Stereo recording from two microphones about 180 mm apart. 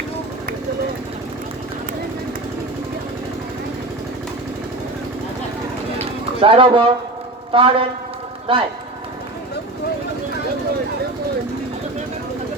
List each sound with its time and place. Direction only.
6.4 s a man's voice: 30° right (ahead or behind)